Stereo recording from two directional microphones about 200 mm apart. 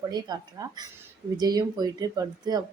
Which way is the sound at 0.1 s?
20° right (ahead or behind).